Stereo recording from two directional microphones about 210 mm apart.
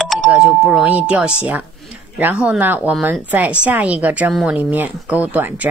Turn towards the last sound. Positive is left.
turn(degrees=-10)  # may be behind; listen again after turning